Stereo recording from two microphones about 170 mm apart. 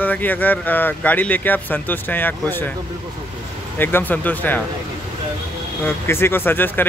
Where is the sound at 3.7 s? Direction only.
10° left (ahead or behind).